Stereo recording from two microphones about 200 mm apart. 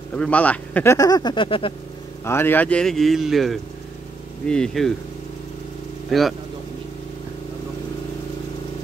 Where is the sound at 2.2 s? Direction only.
10° left (ahead or behind).